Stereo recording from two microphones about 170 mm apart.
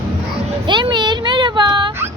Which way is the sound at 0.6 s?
25° right (ahead or behind).